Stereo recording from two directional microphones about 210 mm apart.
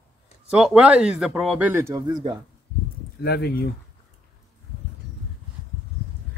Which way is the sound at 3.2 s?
50° left (ahead or behind).